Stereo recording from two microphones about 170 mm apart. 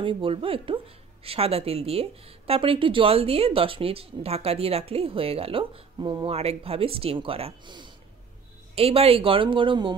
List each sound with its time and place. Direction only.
0.0 s speech: 30° right (ahead or behind)